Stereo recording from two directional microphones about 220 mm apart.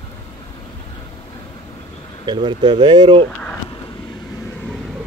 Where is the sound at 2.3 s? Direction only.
20° right (ahead or behind).